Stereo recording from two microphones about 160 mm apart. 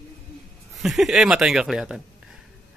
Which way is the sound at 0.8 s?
Centre (ahead or behind).